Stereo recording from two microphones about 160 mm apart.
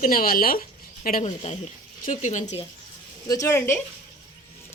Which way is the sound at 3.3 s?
20° left (ahead or behind).